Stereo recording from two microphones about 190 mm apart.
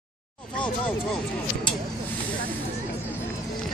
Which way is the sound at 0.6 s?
5° left (ahead or behind).